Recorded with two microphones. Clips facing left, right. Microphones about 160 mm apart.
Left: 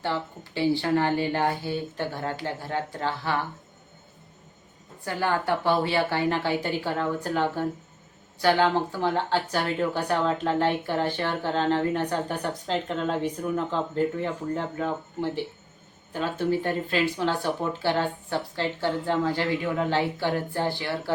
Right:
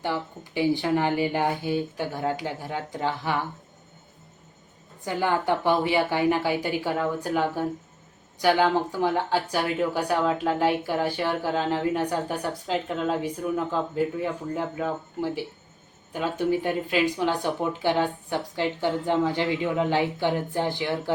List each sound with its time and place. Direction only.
0.0 s speech: 15° right (ahead or behind)
5.0 s speech: 15° right (ahead or behind)